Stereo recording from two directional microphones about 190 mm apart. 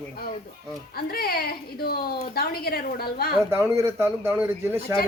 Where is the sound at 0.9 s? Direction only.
55° left (ahead or behind).